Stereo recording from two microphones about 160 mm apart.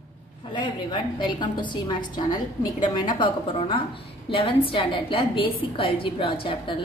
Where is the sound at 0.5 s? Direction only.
30° left (ahead or behind).